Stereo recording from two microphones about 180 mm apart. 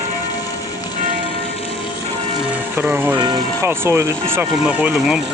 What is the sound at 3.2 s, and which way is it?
Speech, 25° right (ahead or behind).